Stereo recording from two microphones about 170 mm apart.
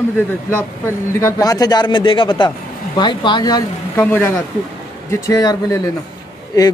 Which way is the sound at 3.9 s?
10° left (ahead or behind).